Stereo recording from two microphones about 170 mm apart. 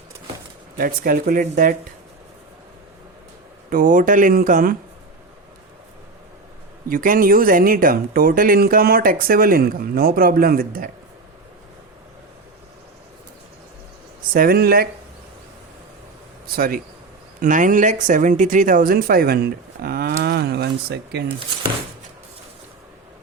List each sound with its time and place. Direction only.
0.8 s speech: 60° right (ahead or behind)
3.7 s speech: 50° right (ahead or behind)
6.8 s speech: 55° right (ahead or behind)
14.3 s speech: 60° right (ahead or behind)
16.6 s speech: 60° right (ahead or behind); by 21.2 s 75° right (ahead or behind)